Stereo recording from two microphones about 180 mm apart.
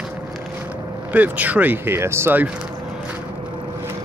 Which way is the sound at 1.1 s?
10° right (ahead or behind).